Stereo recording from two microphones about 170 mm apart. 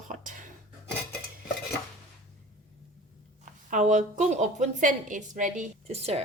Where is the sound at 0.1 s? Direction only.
55° right (ahead or behind).